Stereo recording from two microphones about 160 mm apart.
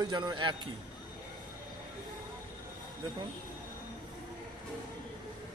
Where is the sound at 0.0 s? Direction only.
25° right (ahead or behind).